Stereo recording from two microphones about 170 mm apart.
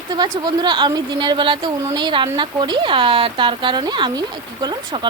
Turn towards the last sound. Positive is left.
turn(degrees=-25)  # may be behind; listen again after turning